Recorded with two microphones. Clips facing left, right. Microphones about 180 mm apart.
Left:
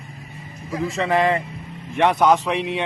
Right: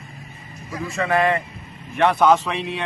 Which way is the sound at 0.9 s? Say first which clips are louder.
Even; 20° left (ahead or behind).